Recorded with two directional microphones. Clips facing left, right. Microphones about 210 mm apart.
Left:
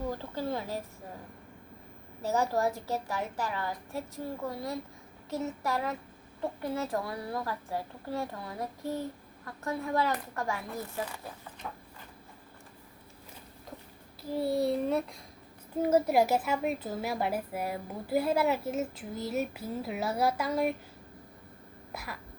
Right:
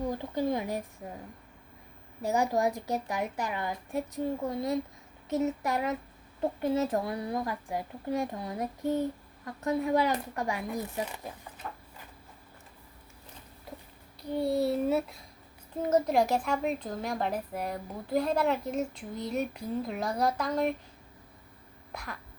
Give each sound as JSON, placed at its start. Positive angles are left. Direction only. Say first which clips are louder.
{"t": 0.1, "sound": "a woman's voice", "louder": "right 4 dB", "side_deg": -15}
{"t": 2.2, "sound": "a woman's voice", "louder": "right 1 dB", "side_deg": -15}
{"t": 11.6, "sound": "a sound", "louder": "even", "side_deg": 5}
{"t": 14.2, "sound": "a child's voice", "louder": "right 1 dB", "side_deg": 0}
{"t": 15.8, "sound": "a woman's voice", "louder": "left 1 dB", "side_deg": 10}
{"t": 21.9, "sound": "a child's voice", "louder": "even", "side_deg": 5}